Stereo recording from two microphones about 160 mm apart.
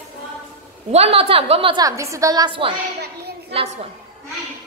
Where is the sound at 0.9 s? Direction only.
40° right (ahead or behind).